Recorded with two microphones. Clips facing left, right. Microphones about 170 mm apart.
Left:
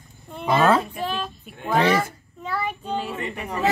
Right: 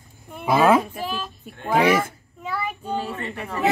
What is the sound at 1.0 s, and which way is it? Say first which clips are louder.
Child singing: left 2 dB; 5° right (ahead or behind).